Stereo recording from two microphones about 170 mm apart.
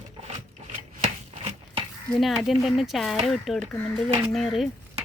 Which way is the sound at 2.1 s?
Centre (ahead or behind).